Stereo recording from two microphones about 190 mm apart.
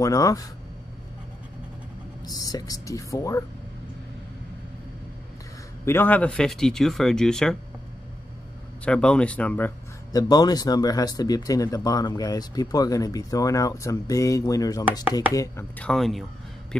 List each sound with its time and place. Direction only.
0.0 s speech: 20° left (ahead or behind)
2.2 s speech: 20° left (ahead or behind)
5.9 s speech: 10° left (ahead or behind)
8.8 s speech: 5° left (ahead or behind)
10.1 s speech: 20° left (ahead or behind)
15.9 s speech: centre (ahead or behind)